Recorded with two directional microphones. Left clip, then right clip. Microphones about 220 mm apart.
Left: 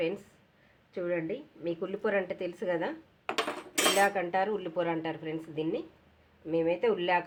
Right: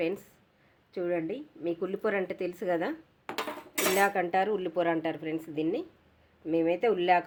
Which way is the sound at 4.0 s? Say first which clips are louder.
Right 4 dB; 30° right (ahead or behind).